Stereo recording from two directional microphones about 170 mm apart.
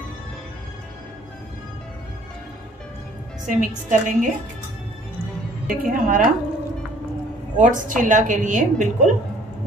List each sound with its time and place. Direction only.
3.4 s a woman's voice: 50° right (ahead or behind)
5.7 s a woman's voice: 55° right (ahead or behind)
7.5 s a woman's voice: 50° right (ahead or behind)